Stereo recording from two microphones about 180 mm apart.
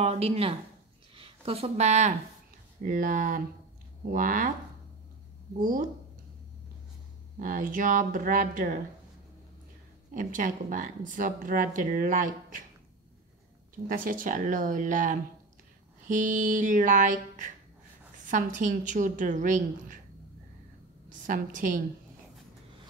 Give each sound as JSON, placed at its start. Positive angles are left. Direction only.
{"t": 0.0, "sound": "speech", "side_deg": -35}
{"t": 7.3, "sound": "speech", "side_deg": -50}
{"t": 10.1, "sound": "speech", "side_deg": -50}
{"t": 13.8, "sound": "speech", "side_deg": -50}
{"t": 21.1, "sound": "a woman's voice", "side_deg": -45}